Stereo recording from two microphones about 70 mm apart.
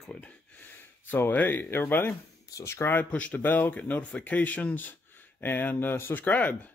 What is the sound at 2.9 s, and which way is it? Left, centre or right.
Speech, left.